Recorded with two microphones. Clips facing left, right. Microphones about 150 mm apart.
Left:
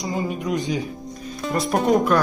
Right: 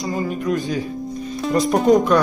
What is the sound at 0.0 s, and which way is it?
Speech, 15° left (ahead or behind).